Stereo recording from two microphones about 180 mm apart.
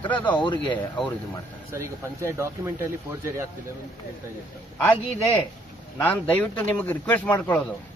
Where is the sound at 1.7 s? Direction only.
15° right (ahead or behind).